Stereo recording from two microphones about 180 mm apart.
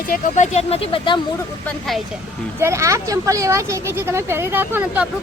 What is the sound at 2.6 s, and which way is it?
Speech, 15° right (ahead or behind).